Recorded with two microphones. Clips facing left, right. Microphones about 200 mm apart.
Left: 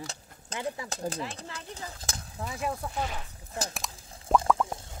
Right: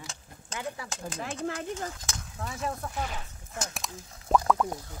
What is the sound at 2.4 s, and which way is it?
Speech, 10° left (ahead or behind).